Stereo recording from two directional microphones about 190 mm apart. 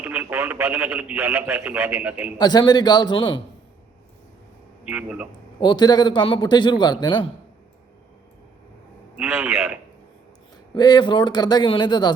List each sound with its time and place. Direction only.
0.0 s speech: 10° right (ahead or behind)
2.4 s a man's voice: 20° left (ahead or behind)
4.9 s speech: 5° right (ahead or behind)
5.5 s a man's voice: 25° left (ahead or behind)
9.1 s speech: 10° right (ahead or behind)
10.8 s a man's voice: 20° left (ahead or behind)